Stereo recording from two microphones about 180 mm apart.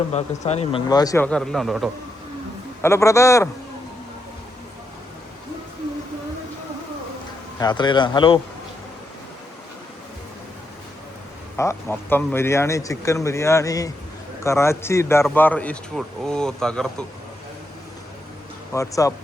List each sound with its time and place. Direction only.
0.1 s speech: 35° left (ahead or behind)
0.9 s speech: 20° left (ahead or behind)
1.2 s speech: 5° left (ahead or behind)
2.8 s speech: 15° left (ahead or behind)
7.6 s speech: 25° left (ahead or behind)
11.5 s speech: 15° left (ahead or behind)
18.7 s speech: 15° left (ahead or behind)